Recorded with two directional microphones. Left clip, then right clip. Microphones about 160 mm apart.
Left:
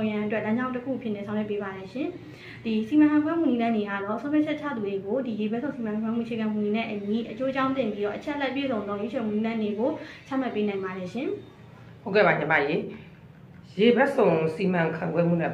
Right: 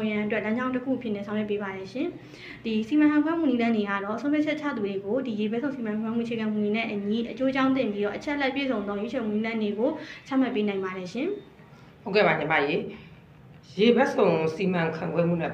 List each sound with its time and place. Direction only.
0.0 s a woman's voice: 35° right (ahead or behind)